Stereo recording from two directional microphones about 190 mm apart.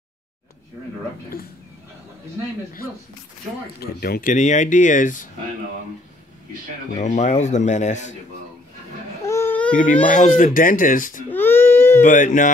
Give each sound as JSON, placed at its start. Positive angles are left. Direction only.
{"t": 3.8, "sound": "speech", "side_deg": 55}
{"t": 7.0, "sound": "speech", "side_deg": 40}
{"t": 9.2, "sound": "babbling", "side_deg": 15}
{"t": 10.0, "sound": "speech", "side_deg": 40}
{"t": 11.2, "sound": "baby cry", "side_deg": 10}
{"t": 12.0, "sound": "speech", "side_deg": 40}